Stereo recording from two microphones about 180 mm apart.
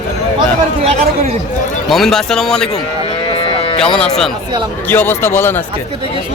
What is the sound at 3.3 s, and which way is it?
Music, 30° left (ahead or behind).